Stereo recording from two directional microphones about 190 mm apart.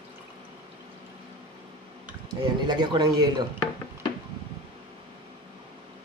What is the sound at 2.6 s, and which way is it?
Speech, 25° right (ahead or behind).